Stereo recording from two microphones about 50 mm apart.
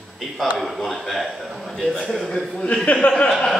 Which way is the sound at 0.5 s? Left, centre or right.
Centre.